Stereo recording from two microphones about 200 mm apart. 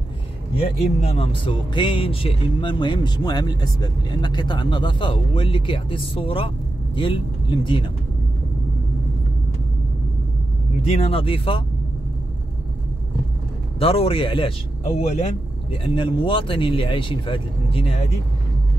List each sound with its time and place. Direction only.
1.0 s speech: 30° left (ahead or behind)
10.9 s speech: 30° left (ahead or behind)
13.7 s speech: 30° left (ahead or behind)